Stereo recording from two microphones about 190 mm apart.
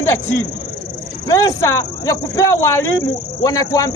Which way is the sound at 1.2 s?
15° left (ahead or behind).